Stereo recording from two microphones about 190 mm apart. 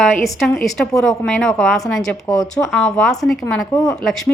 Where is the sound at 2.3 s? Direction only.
20° left (ahead or behind).